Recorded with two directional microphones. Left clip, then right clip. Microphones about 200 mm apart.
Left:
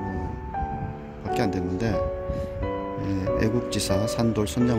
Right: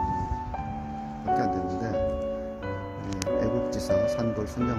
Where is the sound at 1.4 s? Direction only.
40° left (ahead or behind).